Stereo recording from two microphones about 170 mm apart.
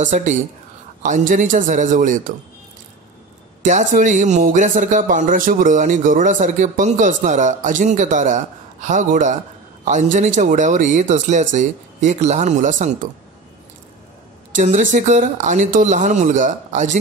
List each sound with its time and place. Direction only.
0.0 s speech: 45° right (ahead or behind)
3.6 s speech: 45° right (ahead or behind)
14.5 s speech: 45° right (ahead or behind)